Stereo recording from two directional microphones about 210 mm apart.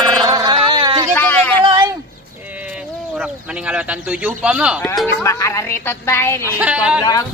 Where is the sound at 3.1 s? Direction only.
5° right (ahead or behind).